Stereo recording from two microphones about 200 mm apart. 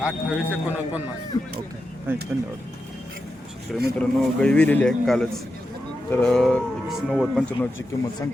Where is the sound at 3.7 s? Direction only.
5° left (ahead or behind).